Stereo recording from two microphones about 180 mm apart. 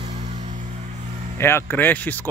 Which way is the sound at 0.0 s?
35° right (ahead or behind).